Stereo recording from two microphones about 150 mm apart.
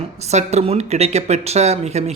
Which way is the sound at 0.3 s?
45° right (ahead or behind).